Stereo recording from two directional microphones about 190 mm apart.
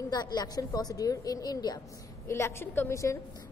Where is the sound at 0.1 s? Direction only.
20° left (ahead or behind).